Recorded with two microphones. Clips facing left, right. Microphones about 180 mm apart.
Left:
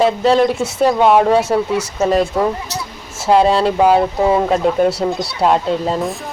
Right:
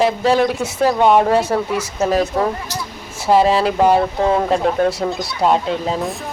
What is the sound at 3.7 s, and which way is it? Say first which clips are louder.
Speech: left 2 dB; 5° left (ahead or behind).